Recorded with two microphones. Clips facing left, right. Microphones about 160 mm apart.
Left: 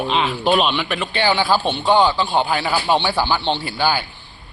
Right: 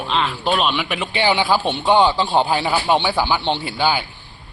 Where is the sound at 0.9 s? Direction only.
15° right (ahead or behind).